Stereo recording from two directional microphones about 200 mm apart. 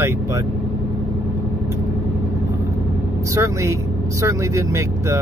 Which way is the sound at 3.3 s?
15° right (ahead or behind).